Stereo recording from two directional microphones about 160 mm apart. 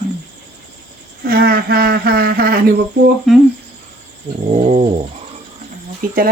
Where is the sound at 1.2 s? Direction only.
70° right (ahead or behind).